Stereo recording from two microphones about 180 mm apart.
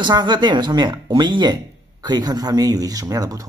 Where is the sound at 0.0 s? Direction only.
25° right (ahead or behind).